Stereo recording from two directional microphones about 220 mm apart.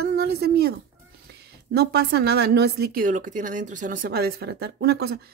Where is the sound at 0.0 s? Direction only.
50° right (ahead or behind).